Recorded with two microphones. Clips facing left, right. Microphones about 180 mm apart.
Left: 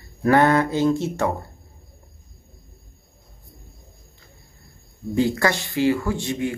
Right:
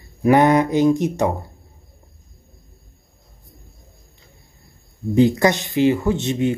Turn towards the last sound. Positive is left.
turn(degrees=-20)  # may be behind; listen again after turning